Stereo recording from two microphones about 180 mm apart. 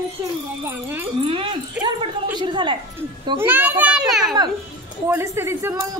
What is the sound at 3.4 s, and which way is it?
Speech, 10° right (ahead or behind).